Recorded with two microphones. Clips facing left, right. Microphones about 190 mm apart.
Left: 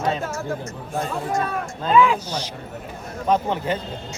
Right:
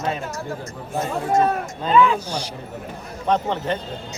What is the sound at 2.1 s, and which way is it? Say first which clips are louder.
Speech: right 1 dB; 10° right (ahead or behind).